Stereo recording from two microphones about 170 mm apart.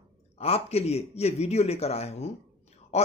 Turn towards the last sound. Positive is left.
turn(degrees=40)  # may be behind; listen again after turning